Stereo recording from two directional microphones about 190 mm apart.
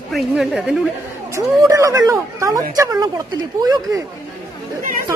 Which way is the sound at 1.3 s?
15° right (ahead or behind).